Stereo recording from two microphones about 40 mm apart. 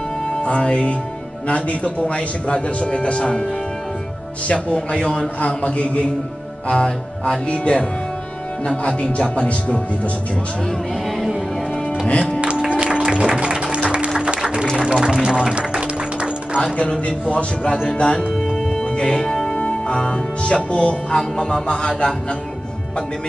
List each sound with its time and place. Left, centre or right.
0.4 s a man's voice: left
4.5 s a man's voice: left
12.4 s music: right
16.7 s a man's voice: left
18.2 s music: centre
18.7 s music: centre
19.5 s music: left
20.7 s a man's voice: left